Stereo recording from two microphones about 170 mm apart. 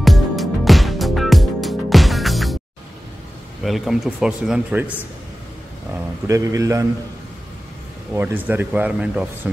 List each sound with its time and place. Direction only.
0.0 s music: centre (ahead or behind)
3.6 s speech: centre (ahead or behind)
6.2 s a man's voice: 20° right (ahead or behind)
8.1 s speech: 10° right (ahead or behind)